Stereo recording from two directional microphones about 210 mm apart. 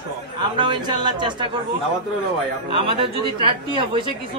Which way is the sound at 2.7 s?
25° right (ahead or behind).